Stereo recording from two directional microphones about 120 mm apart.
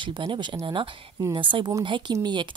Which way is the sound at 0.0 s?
40° right (ahead or behind).